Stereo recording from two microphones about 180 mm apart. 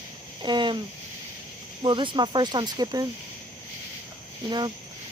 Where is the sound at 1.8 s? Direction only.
25° right (ahead or behind).